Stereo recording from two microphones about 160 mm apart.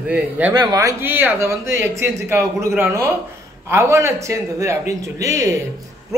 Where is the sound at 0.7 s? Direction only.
20° right (ahead or behind).